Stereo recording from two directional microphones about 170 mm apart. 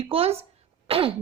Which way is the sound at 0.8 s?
35° right (ahead or behind).